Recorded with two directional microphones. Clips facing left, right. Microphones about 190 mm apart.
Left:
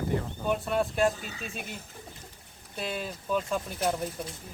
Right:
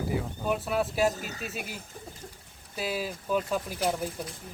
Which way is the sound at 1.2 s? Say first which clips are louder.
Right 3 dB; 40° right (ahead or behind).